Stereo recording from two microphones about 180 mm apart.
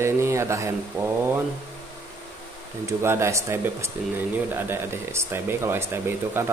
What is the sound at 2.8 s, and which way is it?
Speech, 15° right (ahead or behind).